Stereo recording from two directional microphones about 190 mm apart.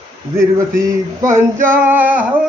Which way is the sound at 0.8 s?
15° right (ahead or behind).